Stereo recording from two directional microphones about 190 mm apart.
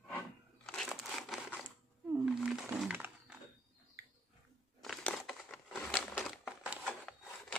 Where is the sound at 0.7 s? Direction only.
Centre (ahead or behind).